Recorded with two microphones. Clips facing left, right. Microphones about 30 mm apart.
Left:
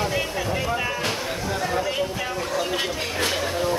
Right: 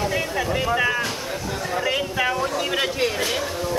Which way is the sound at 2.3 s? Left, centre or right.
Centre.